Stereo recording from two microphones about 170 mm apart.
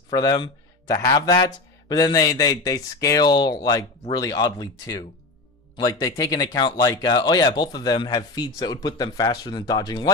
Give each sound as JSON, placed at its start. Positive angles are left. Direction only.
{"t": 0.1, "sound": "speech", "side_deg": 20}